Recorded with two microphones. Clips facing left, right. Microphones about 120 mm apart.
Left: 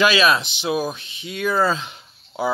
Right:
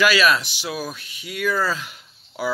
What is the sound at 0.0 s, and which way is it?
Speech, 20° left (ahead or behind).